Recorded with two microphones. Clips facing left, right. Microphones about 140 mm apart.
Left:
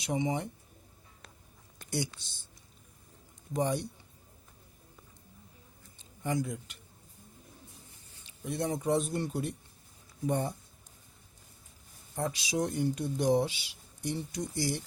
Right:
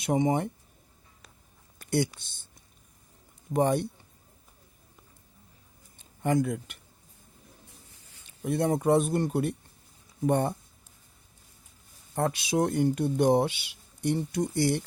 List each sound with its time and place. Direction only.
0.0 s speech: 50° right (ahead or behind)
2.2 s speech: 55° right (ahead or behind)
3.5 s speech: 60° right (ahead or behind)
6.0 s speech: 60° right (ahead or behind)
8.4 s speech: 55° right (ahead or behind)
12.1 s speech: 60° right (ahead or behind)